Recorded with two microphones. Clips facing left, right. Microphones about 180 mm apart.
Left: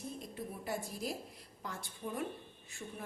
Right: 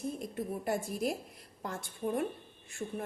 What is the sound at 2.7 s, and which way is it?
Speech, 50° right (ahead or behind).